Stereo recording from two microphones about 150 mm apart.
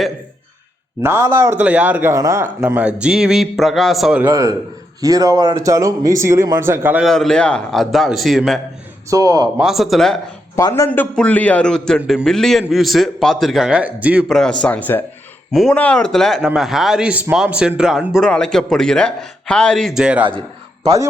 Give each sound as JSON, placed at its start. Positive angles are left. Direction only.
{"t": 1.0, "sound": "a man's voice", "side_deg": -15}
{"t": 4.3, "sound": "speech", "side_deg": -25}
{"t": 7.0, "sound": "a man's voice", "side_deg": 0}
{"t": 9.0, "sound": "speech", "side_deg": -25}
{"t": 9.6, "sound": "a man's voice", "side_deg": 0}
{"t": 10.5, "sound": "a man's voice", "side_deg": 25}
{"t": 10.9, "sound": "a man's voice", "side_deg": 10}
{"t": 14.6, "sound": "a man's voice", "side_deg": 10}
{"t": 20.8, "sound": "speech", "side_deg": -20}